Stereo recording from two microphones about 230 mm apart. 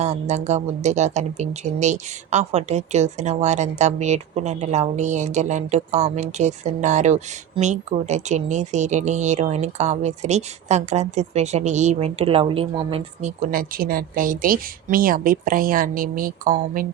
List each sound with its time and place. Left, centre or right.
0.0 s speech: right